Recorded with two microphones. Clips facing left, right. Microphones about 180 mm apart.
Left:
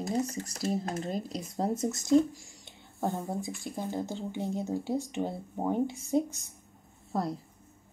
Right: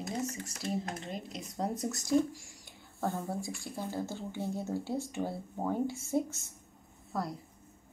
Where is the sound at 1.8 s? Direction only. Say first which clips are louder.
Left 5 dB; 20° left (ahead or behind).